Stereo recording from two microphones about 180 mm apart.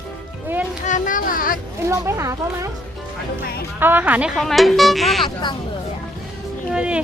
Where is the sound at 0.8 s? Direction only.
45° left (ahead or behind).